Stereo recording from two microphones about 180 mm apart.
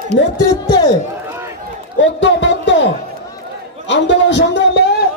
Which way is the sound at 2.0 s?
85° left.